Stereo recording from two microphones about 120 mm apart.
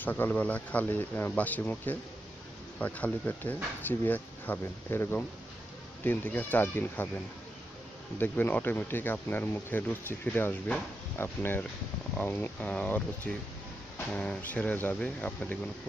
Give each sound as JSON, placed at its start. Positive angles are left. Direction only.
{"t": 0.0, "sound": "speech", "side_deg": 15}
{"t": 8.2, "sound": "speech", "side_deg": 15}